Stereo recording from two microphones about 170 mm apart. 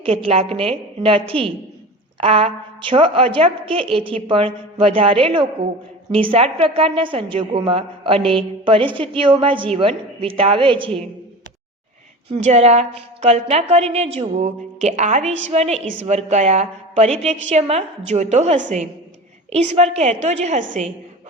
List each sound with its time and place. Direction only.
0.0 s a woman's voice: 35° right (ahead or behind)
12.3 s a woman's voice: 40° right (ahead or behind)